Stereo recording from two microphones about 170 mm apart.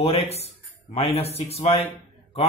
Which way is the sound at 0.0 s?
35° left (ahead or behind).